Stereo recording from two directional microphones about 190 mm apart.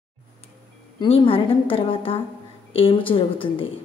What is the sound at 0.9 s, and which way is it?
A woman's voice, 30° left (ahead or behind).